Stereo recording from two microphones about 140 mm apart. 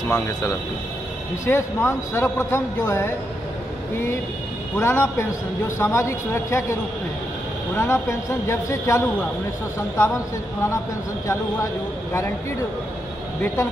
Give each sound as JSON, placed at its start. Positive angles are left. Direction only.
{"t": 0.1, "sound": "speech", "side_deg": 20}
{"t": 4.7, "sound": "a man's voice", "side_deg": 20}